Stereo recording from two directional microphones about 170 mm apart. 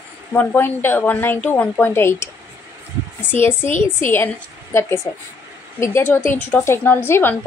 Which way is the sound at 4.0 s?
15° left (ahead or behind).